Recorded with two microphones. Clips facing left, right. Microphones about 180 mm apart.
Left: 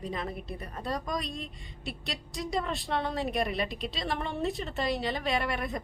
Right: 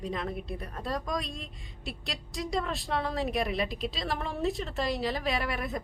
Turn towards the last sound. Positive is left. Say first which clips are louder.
# left 1 dB
turn(degrees=0)  # may be behind; listen again after turning